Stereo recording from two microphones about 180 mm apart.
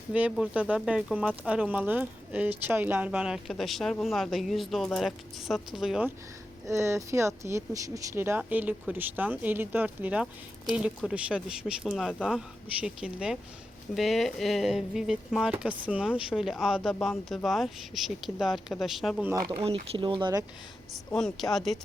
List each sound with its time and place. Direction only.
0.1 s speech: 5° right (ahead or behind)
6.7 s speech: 15° right (ahead or behind)
19.5 s speech: 35° right (ahead or behind)
20.9 s speech: 5° left (ahead or behind)